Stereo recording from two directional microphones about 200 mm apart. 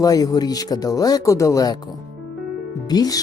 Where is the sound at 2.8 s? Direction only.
20° left (ahead or behind).